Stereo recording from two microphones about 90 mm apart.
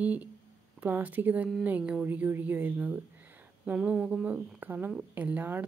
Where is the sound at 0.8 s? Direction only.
20° right (ahead or behind).